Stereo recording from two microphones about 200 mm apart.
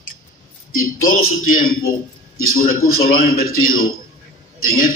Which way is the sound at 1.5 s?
45° left (ahead or behind).